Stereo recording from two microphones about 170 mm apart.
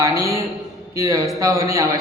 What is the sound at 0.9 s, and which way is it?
Speech, 20° right (ahead or behind).